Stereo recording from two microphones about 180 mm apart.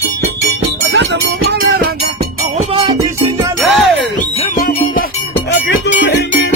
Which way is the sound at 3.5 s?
Centre (ahead or behind).